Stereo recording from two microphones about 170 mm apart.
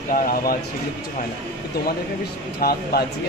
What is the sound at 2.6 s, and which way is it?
Speech, 65° left (ahead or behind).